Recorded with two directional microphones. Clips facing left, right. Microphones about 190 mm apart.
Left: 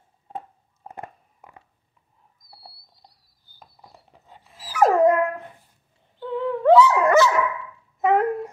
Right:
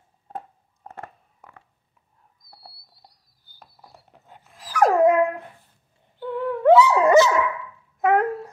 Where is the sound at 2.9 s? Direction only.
5° right (ahead or behind).